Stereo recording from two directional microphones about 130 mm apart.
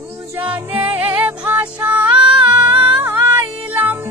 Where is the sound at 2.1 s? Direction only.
40° right (ahead or behind).